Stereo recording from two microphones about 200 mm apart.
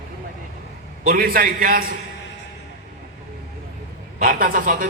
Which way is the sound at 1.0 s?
45° right (ahead or behind).